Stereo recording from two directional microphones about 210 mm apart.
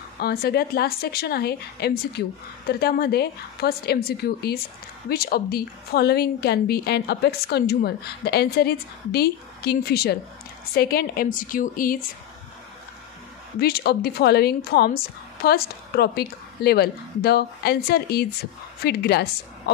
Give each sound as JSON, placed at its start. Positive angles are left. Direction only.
{"t": 0.2, "sound": "a woman's voice", "side_deg": 50}
{"t": 13.6, "sound": "a woman's voice", "side_deg": 50}